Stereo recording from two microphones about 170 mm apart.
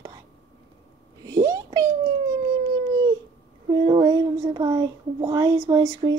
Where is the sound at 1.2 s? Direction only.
20° right (ahead or behind).